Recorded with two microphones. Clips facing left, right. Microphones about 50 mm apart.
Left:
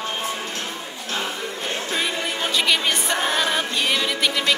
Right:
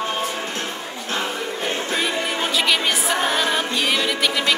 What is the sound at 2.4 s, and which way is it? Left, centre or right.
Music, centre.